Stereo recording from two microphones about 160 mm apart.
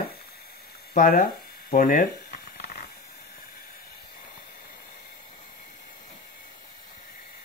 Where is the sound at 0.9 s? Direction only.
60° left (ahead or behind).